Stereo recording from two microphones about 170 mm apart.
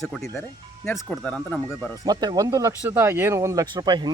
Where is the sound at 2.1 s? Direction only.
25° right (ahead or behind).